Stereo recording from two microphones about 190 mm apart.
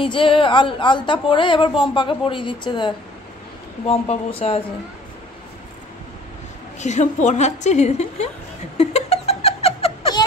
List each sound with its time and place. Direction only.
0.0 s a woman's voice: 25° left (ahead or behind)
6.8 s a woman's voice: 40° left (ahead or behind)
8.7 s a sound: 35° left (ahead or behind)